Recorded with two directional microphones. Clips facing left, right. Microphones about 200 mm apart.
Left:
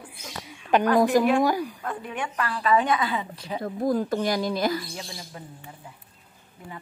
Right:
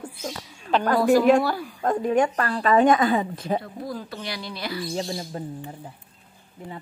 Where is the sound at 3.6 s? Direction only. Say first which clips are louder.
Left 8 dB; 50° left (ahead or behind).